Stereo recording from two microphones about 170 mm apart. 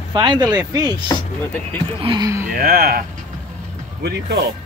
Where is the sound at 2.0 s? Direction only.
25° right (ahead or behind).